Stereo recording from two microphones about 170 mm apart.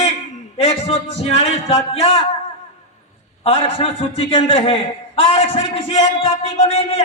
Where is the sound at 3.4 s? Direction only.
35° left (ahead or behind).